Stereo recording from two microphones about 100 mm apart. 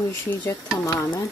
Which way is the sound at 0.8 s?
35° left (ahead or behind).